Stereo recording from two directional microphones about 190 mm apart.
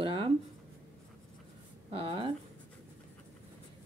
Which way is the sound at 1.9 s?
30° right (ahead or behind).